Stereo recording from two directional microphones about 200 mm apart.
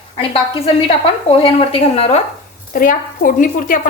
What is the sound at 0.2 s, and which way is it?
A woman's voice, 30° left (ahead or behind).